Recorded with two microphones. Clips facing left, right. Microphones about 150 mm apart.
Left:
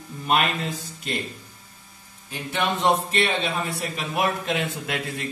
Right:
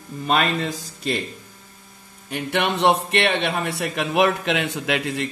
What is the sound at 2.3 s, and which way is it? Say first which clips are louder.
A man's voice: right 3 dB; 70° right (ahead or behind).